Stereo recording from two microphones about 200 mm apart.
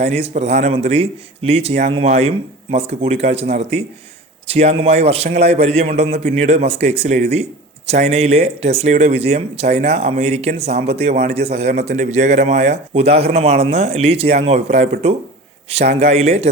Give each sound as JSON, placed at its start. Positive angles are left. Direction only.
{"t": 0.0, "sound": "a man's voice", "side_deg": -30}
{"t": 15.9, "sound": "a man's voice", "side_deg": -35}